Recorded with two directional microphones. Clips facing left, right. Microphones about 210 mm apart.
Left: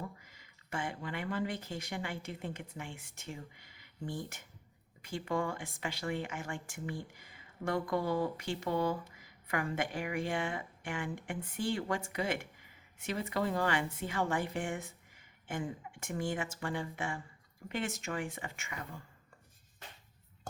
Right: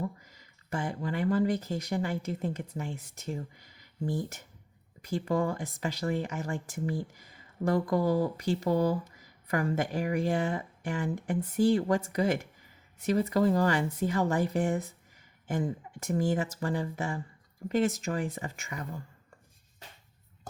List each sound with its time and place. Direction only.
0.0 s speech: 40° right (ahead or behind)